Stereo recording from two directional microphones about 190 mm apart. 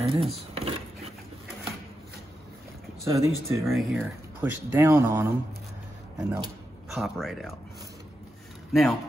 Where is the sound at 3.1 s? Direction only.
15° right (ahead or behind).